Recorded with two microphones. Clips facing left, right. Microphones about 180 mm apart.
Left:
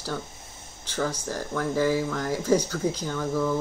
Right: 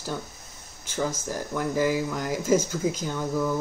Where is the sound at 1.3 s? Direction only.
15° right (ahead or behind).